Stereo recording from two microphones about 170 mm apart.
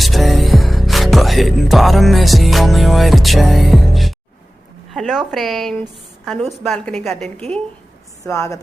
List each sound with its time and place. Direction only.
0.0 s music: centre (ahead or behind)
4.9 s a woman's voice: centre (ahead or behind)
8.2 s a woman's voice: 20° left (ahead or behind)